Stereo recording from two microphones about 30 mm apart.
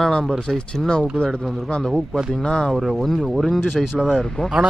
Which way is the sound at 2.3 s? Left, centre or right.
Left.